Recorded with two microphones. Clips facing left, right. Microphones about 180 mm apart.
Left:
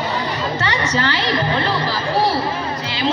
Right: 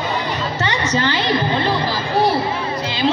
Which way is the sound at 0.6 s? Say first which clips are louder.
Right 2 dB; 20° right (ahead or behind).